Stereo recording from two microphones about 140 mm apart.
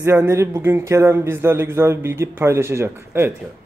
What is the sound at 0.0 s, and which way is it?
A man's voice, 20° right (ahead or behind).